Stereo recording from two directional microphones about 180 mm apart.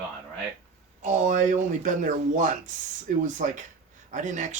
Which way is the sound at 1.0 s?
45° right (ahead or behind).